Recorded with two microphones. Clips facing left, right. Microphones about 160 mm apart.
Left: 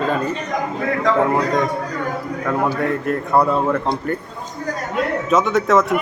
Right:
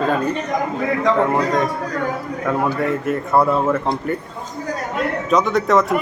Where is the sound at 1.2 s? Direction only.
Centre (ahead or behind).